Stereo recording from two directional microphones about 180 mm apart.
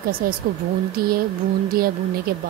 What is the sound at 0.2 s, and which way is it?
Speech, 55° right (ahead or behind).